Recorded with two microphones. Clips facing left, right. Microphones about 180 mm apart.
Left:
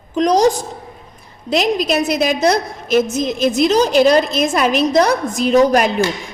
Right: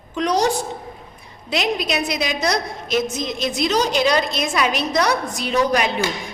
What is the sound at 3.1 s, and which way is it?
Speech, 5° left (ahead or behind).